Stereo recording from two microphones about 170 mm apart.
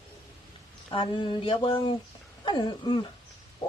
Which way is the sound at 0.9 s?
30° left (ahead or behind).